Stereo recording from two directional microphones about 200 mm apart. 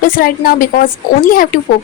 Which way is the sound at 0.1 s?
45° left (ahead or behind).